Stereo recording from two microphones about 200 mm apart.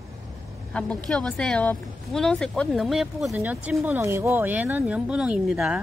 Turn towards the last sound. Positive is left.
turn(degrees=-5)  # may be behind; listen again after turning